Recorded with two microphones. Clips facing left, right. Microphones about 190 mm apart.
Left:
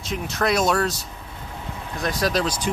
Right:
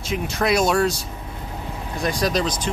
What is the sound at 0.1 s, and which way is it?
Speech, centre (ahead or behind).